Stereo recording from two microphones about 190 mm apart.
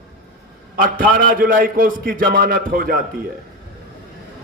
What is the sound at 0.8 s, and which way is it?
Music, 50° right (ahead or behind).